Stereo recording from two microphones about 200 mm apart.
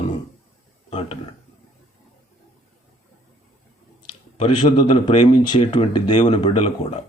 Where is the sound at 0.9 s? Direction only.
30° left (ahead or behind).